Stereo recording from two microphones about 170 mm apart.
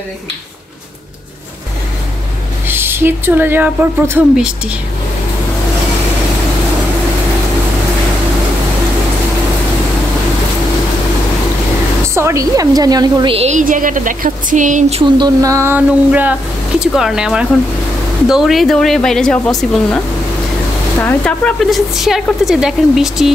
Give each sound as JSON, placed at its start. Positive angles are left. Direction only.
{"t": 2.7, "sound": "speech", "side_deg": -15}
{"t": 12.1, "sound": "a woman's voice", "side_deg": -15}
{"t": 15.1, "sound": "speech", "side_deg": -20}
{"t": 21.0, "sound": "speech", "side_deg": 5}